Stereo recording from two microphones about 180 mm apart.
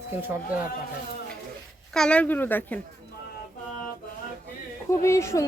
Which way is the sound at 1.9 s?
5° left (ahead or behind).